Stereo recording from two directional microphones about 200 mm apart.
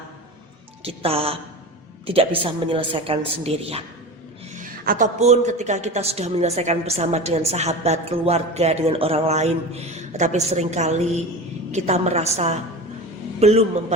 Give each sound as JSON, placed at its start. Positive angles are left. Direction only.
{"t": 0.9, "sound": "a woman's voice", "side_deg": -30}
{"t": 4.5, "sound": "a woman's voice", "side_deg": -40}